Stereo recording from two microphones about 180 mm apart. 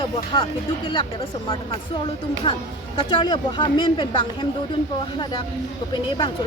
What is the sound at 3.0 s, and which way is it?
Speech, 30° left (ahead or behind).